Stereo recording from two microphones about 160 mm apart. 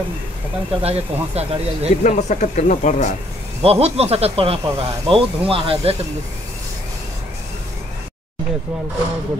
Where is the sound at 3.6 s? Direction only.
40° right (ahead or behind).